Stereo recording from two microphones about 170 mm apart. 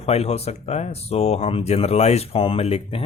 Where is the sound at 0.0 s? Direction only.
35° left (ahead or behind).